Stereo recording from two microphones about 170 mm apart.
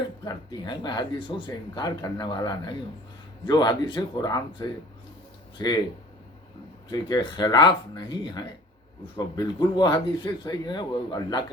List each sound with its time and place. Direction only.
0.3 s speech: 25° left (ahead or behind)
6.8 s speech: 25° left (ahead or behind)